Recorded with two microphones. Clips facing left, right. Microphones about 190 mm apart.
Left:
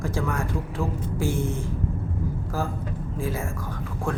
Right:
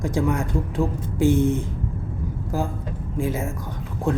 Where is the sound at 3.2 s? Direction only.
20° right (ahead or behind).